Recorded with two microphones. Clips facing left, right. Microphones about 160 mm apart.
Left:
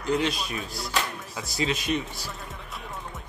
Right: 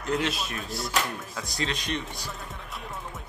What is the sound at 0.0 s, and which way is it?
Speech, centre (ahead or behind).